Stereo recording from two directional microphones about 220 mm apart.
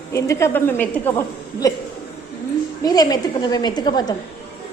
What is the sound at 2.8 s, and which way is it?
A woman's voice, 15° left (ahead or behind).